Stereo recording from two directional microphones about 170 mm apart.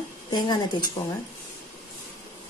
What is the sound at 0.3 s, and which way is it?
Speech, 25° left (ahead or behind).